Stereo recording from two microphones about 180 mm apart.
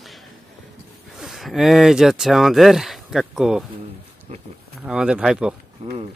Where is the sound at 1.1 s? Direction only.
Centre (ahead or behind).